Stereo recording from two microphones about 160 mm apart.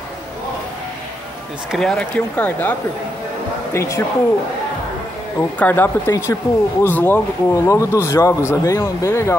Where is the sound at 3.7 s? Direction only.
20° left (ahead or behind).